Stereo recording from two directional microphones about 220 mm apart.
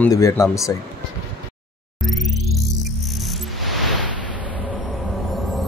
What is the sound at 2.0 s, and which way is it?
Music, centre (ahead or behind).